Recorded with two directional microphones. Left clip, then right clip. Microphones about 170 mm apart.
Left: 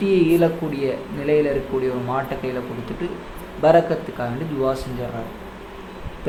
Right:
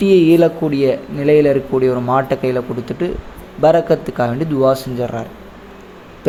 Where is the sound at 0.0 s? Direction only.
40° right (ahead or behind).